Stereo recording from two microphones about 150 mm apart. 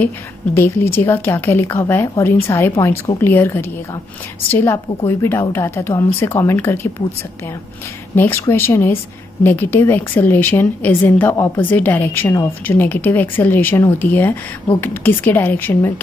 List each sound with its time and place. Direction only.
0.6 s speech: 15° left (ahead or behind)
8.2 s speech: 15° left (ahead or behind)